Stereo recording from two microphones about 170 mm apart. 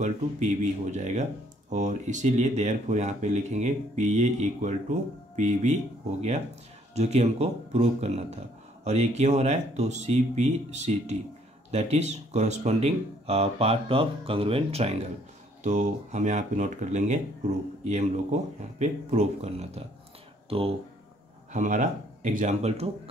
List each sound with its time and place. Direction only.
0.0 s speech: 45° right (ahead or behind)
7.0 s speech: 40° right (ahead or behind)
21.5 s speech: 45° right (ahead or behind)